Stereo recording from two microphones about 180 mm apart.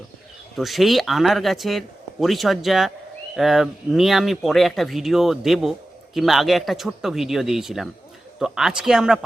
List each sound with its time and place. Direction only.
0.5 s speech: centre (ahead or behind)